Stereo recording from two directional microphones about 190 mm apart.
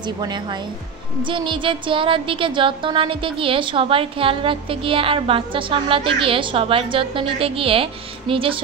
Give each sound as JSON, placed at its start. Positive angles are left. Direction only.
{"t": 0.0, "sound": "speech", "side_deg": -25}